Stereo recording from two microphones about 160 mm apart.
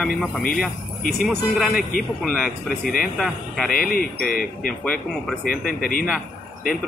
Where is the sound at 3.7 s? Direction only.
65° left (ahead or behind).